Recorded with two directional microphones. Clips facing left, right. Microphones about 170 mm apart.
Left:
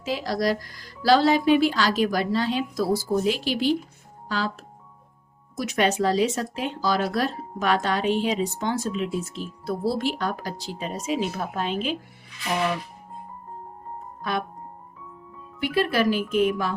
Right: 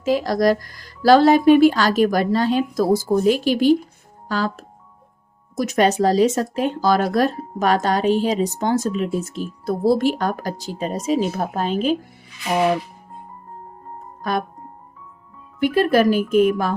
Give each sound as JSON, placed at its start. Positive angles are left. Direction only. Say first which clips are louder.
{"t": 0.0, "sound": "speech", "louder": "right 7 dB", "side_deg": -45}
{"t": 14.2, "sound": "speech", "louder": "right 5 dB", "side_deg": -45}
{"t": 15.6, "sound": "speech", "louder": "right 6 dB", "side_deg": -45}